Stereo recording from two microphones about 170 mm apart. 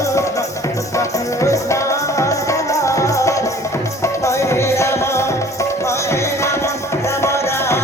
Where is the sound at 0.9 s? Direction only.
15° left (ahead or behind).